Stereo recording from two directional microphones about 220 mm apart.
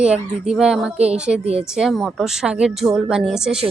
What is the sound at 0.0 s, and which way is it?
A woman's voice, 5° right (ahead or behind).